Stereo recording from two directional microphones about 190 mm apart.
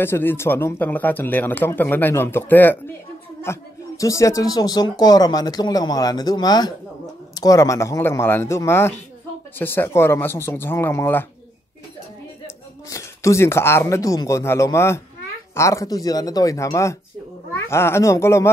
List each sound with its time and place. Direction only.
0.0 s speech: 10° left (ahead or behind)
12.9 s speech: 15° left (ahead or behind)